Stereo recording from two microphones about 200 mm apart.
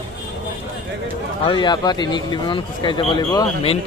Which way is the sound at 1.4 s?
20° left (ahead or behind).